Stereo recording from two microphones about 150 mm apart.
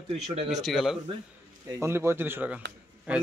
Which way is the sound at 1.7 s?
20° right (ahead or behind).